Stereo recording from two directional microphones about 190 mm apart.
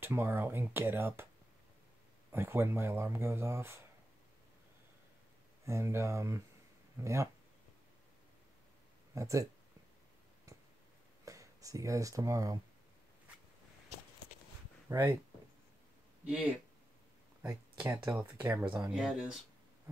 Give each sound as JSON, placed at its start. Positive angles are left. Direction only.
{"t": 0.0, "sound": "speech", "side_deg": -10}
{"t": 2.3, "sound": "speech", "side_deg": -15}
{"t": 5.7, "sound": "speech", "side_deg": -15}
{"t": 9.1, "sound": "speech", "side_deg": -15}
{"t": 11.2, "sound": "speech", "side_deg": -15}
{"t": 14.9, "sound": "speech", "side_deg": -10}
{"t": 17.4, "sound": "speech", "side_deg": -10}